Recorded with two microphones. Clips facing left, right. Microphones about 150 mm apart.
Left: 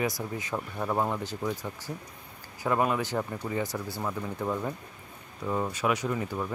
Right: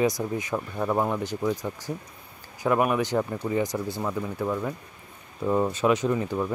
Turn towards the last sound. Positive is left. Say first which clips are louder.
# right 6 dB
turn(degrees=-20)  # may be behind; listen again after turning